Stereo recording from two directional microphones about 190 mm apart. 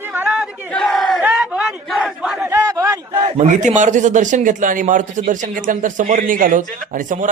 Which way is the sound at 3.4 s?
40° right (ahead or behind).